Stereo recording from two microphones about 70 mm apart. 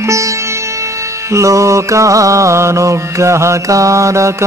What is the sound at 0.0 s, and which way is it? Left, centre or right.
Sitar, right.